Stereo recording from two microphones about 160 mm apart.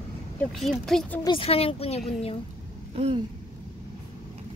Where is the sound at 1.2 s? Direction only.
35° left (ahead or behind).